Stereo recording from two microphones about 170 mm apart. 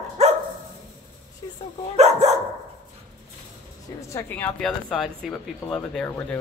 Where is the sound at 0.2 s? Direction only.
40° right (ahead or behind).